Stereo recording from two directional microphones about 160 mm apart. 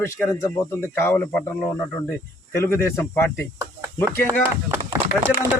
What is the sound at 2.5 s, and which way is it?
Speech, 15° left (ahead or behind).